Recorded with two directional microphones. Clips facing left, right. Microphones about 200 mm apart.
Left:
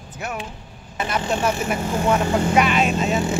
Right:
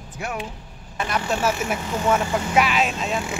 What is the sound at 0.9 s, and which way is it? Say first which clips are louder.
Speech: left 1 dB; centre (ahead or behind).